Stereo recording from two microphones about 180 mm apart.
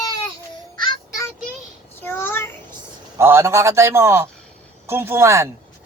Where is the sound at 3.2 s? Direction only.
15° right (ahead or behind).